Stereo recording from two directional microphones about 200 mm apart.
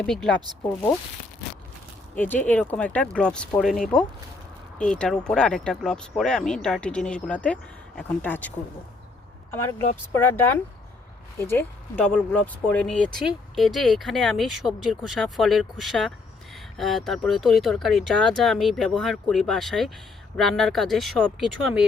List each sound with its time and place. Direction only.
0.0 s speech: 5° left (ahead or behind)
2.1 s speech: 10° left (ahead or behind)